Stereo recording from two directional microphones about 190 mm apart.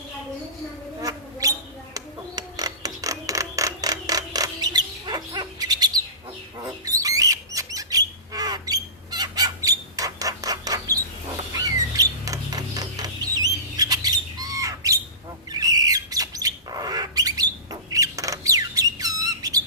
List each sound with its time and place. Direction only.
1.0 s a sound: 20° right (ahead or behind)
6.6 s bird: 20° right (ahead or behind)
11.5 s rodents: 20° right (ahead or behind)
15.5 s squawk: 20° right (ahead or behind)
16.7 s bird: 20° right (ahead or behind)